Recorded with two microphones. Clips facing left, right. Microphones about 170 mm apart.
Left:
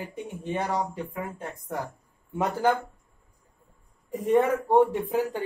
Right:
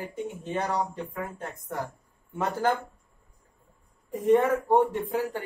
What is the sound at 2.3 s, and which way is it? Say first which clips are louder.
Speech: left 2 dB; 15° left (ahead or behind).